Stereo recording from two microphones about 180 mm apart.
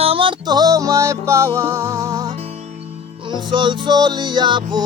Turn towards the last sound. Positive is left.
turn(degrees=-25)  # may be behind; listen again after turning